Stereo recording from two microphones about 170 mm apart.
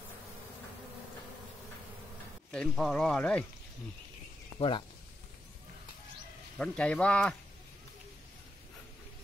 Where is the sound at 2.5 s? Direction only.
Centre (ahead or behind).